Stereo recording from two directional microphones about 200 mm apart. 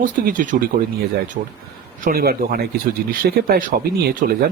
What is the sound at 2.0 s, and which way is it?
Speech, 50° right (ahead or behind).